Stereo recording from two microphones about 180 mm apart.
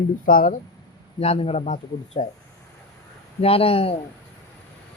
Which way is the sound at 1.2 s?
35° left (ahead or behind).